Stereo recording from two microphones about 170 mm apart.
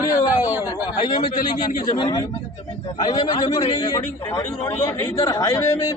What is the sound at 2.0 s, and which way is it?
A man's voice, 25° left (ahead or behind).